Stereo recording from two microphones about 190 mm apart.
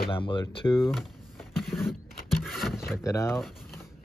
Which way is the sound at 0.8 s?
Centre (ahead or behind).